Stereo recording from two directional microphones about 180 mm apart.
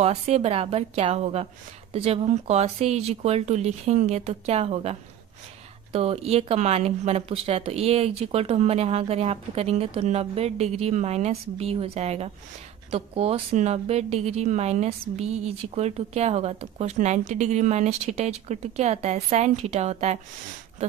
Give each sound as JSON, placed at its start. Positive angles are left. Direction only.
{"t": 0.0, "sound": "a woman's voice", "side_deg": -35}
{"t": 5.9, "sound": "a woman's voice", "side_deg": -35}